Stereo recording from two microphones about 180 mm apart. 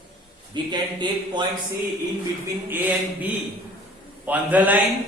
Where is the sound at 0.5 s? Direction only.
25° right (ahead or behind).